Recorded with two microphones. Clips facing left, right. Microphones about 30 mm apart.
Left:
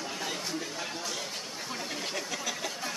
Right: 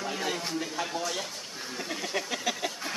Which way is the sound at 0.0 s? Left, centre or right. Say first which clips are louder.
Right 3 dB; centre.